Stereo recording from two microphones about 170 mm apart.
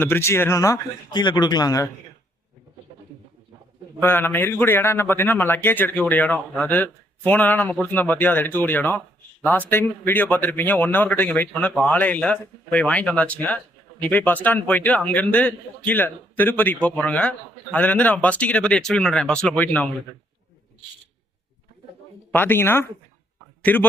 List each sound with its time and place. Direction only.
0.0 s speech: 15° left (ahead or behind)
4.0 s a man's voice: 10° left (ahead or behind)
22.3 s a man's voice: 10° left (ahead or behind)